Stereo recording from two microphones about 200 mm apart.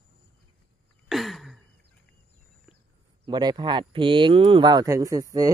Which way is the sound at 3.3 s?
20° right (ahead or behind).